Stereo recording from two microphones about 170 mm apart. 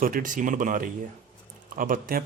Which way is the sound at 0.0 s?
50° right (ahead or behind).